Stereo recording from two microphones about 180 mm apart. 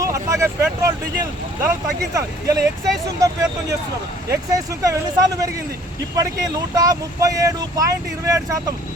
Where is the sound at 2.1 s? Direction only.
20° right (ahead or behind).